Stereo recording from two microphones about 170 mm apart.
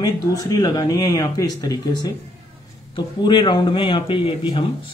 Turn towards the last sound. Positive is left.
turn(degrees=30)  # may be behind; listen again after turning